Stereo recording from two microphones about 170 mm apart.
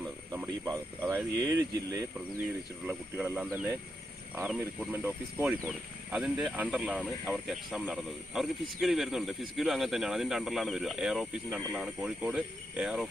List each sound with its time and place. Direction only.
0.3 s speech: 20° right (ahead or behind)